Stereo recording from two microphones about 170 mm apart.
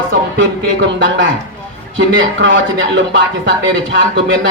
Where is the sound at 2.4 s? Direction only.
90° right.